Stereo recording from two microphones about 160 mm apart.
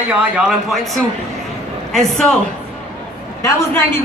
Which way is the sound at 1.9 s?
Centre (ahead or behind).